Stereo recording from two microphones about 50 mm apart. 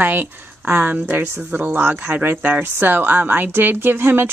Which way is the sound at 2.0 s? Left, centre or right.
Right.